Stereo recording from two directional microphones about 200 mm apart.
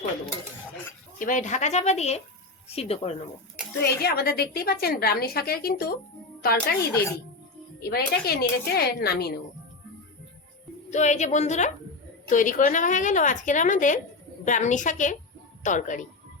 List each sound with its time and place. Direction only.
1.2 s a woman's voice: 40° left (ahead or behind)
3.8 s a woman's voice: 50° left (ahead or behind)
10.9 s a woman's voice: 35° left (ahead or behind)